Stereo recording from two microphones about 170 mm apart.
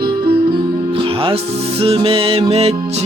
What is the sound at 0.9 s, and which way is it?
Music, 30° right (ahead or behind).